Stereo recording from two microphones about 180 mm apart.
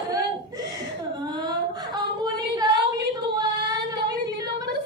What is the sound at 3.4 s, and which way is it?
Female singing, 20° right (ahead or behind).